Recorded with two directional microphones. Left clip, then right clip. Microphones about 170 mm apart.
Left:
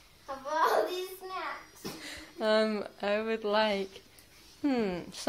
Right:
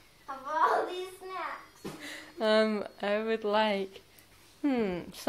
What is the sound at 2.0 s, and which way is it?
Speech, 10° right (ahead or behind).